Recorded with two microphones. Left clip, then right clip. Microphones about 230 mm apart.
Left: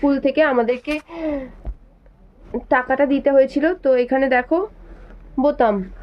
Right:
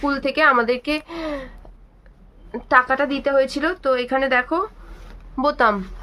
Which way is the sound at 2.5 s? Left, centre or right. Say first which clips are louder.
Right 2 dB; centre.